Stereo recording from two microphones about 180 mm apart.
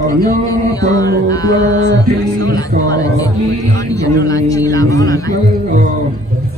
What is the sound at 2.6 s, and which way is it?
A man's voice, 20° left (ahead or behind).